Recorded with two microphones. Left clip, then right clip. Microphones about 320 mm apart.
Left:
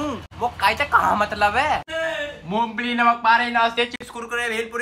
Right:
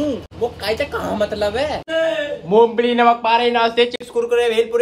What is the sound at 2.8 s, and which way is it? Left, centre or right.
Speech, right.